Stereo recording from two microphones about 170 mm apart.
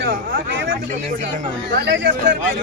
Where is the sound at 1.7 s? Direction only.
90° right.